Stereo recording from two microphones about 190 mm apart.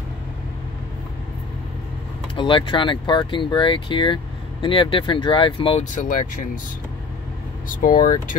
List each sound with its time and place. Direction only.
2.3 s speech: 25° left (ahead or behind)
7.6 s speech: 45° left (ahead or behind)